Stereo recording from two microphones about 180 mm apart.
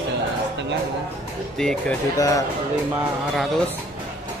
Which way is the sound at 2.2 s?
20° left (ahead or behind).